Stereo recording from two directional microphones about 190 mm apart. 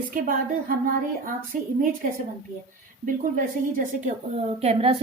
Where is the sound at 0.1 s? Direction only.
45° right (ahead or behind).